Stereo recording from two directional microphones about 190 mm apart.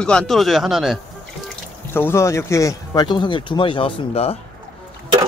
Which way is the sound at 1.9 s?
15° left (ahead or behind).